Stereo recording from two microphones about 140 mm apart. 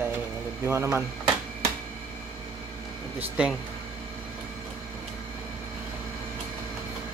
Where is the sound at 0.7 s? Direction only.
20° right (ahead or behind).